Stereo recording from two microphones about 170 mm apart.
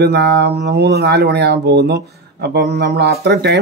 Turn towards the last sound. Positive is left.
turn(degrees=-80)